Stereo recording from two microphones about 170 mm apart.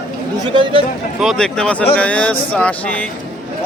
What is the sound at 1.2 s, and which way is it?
A man's voice, centre (ahead or behind).